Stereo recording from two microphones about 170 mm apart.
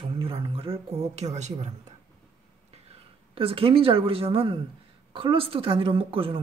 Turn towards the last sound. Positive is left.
turn(degrees=-30)  # may be behind; listen again after turning